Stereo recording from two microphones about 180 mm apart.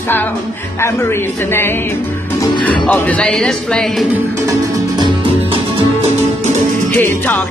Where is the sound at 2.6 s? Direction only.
5° left (ahead or behind).